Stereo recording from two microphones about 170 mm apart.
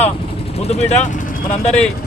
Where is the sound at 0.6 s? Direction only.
40° left (ahead or behind).